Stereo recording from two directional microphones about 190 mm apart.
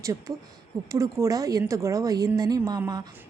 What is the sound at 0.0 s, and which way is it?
A woman's voice, 15° right (ahead or behind).